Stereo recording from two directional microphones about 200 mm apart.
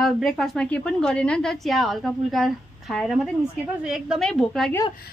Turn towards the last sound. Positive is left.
turn(degrees=5)  # may be behind; listen again after turning